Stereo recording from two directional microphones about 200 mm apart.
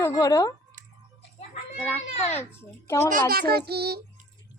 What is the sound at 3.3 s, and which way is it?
Child singing, 50° right (ahead or behind).